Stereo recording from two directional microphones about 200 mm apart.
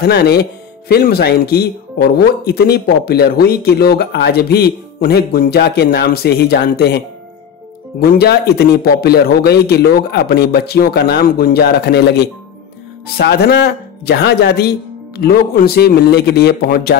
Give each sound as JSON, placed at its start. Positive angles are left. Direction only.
{"t": 0.0, "sound": "speech", "side_deg": 55}
{"t": 8.0, "sound": "speech", "side_deg": 50}